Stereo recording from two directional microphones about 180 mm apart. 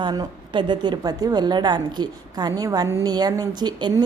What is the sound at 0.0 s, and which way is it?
A woman's voice, 25° right (ahead or behind).